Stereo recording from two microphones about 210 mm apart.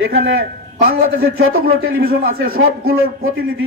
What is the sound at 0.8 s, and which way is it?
A man's voice, 45° right (ahead or behind).